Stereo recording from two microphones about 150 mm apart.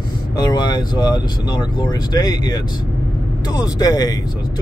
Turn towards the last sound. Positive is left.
turn(degrees=25)  # may be behind; listen again after turning